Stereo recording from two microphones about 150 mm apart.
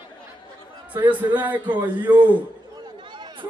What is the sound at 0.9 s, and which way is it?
Speech, 10° right (ahead or behind).